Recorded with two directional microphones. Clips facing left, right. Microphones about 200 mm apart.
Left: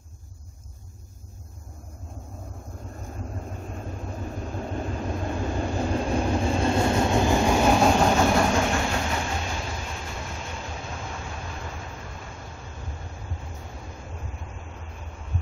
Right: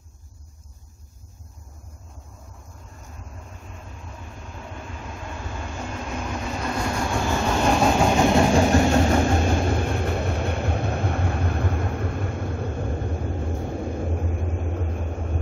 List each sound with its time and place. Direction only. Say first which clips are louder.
4.6 s vehicle: left 7 dB; 40° left (ahead or behind); by 8.1 s centre (ahead or behind)
8.5 s train: right 7 dB; 40° right (ahead or behind); by 15.3 s 55° right (ahead or behind)